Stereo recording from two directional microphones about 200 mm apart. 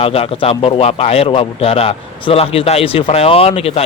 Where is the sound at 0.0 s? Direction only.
30° left (ahead or behind).